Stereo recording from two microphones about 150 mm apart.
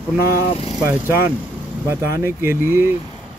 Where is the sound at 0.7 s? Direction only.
20° right (ahead or behind).